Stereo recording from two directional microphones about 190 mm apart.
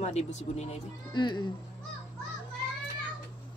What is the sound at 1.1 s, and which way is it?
Speech, 25° left (ahead or behind).